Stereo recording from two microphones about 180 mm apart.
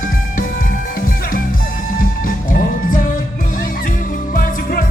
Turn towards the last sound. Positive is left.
turn(degrees=50)  # may be behind; listen again after turning